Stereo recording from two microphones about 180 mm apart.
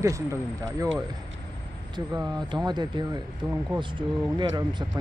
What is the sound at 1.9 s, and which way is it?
Speech, 20° right (ahead or behind).